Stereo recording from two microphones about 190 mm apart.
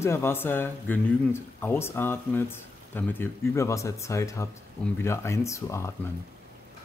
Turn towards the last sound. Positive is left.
turn(degrees=15)  # may be behind; listen again after turning